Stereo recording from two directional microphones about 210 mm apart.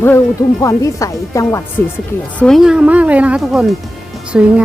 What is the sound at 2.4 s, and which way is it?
Speech, centre (ahead or behind).